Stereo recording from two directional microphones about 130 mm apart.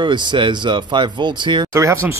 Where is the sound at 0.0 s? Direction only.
35° right (ahead or behind).